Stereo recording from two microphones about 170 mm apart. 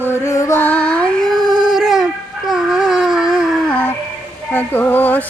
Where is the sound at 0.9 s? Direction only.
5° left (ahead or behind).